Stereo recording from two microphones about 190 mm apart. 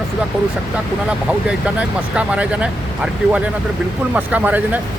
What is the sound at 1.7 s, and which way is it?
Speech, 5° right (ahead or behind).